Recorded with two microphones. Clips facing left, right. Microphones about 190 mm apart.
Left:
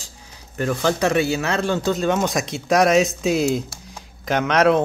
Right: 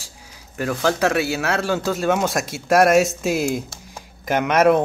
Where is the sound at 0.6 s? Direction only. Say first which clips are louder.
Even; 5° right (ahead or behind).